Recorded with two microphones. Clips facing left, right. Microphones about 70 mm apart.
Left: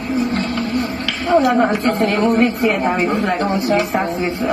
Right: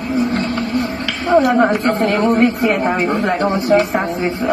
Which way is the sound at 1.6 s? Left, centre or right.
Right.